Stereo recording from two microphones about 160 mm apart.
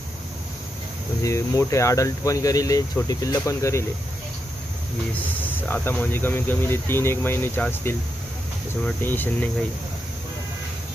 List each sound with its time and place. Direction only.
1.2 s speech: 20° left (ahead or behind)
5.7 s speech: 10° left (ahead or behind)